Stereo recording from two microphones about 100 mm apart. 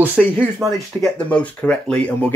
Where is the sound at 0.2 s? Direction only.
5° left (ahead or behind).